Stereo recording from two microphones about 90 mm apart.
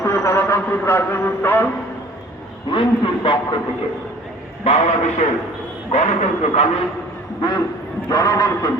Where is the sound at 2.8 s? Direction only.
70° left (ahead or behind).